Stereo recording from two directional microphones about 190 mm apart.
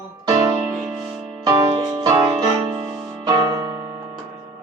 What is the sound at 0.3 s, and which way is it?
Music, 20° right (ahead or behind).